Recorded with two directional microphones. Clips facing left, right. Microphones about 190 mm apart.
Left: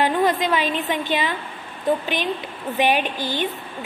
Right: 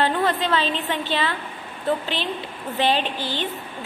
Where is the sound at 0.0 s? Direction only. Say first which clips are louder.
Left 2 dB; 15° left (ahead or behind).